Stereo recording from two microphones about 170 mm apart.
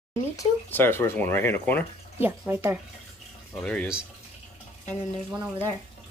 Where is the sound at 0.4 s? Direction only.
10° left (ahead or behind).